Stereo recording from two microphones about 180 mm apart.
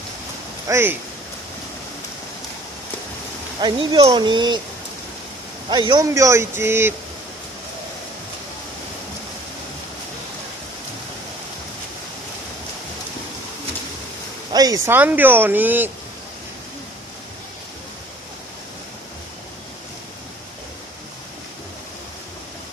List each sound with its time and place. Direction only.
0.7 s speech: 15° right (ahead or behind)
3.6 s speech: 30° right (ahead or behind)
5.7 s speech: 25° right (ahead or behind)
14.5 s speech: 20° right (ahead or behind)